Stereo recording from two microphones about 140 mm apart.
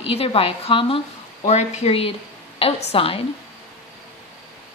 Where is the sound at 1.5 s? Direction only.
50° left (ahead or behind).